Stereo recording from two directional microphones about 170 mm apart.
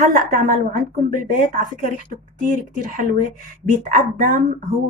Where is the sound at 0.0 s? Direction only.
55° right (ahead or behind).